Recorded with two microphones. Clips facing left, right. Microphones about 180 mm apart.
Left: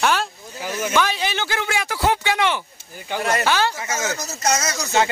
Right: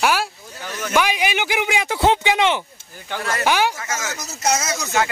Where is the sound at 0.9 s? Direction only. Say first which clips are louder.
Right 3 dB; 15° right (ahead or behind).